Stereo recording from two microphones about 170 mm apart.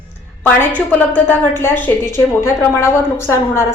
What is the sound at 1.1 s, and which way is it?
A woman's voice, 15° left (ahead or behind).